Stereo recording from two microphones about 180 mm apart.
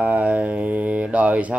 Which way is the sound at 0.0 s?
10° right (ahead or behind).